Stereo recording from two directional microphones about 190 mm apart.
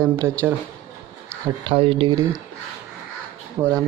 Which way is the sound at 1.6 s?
30° right (ahead or behind).